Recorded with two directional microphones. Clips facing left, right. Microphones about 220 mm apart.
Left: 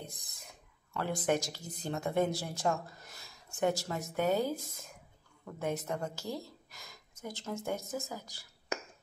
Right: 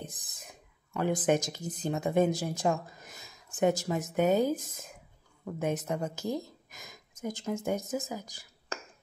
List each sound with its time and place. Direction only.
0.3 s speech: 15° right (ahead or behind)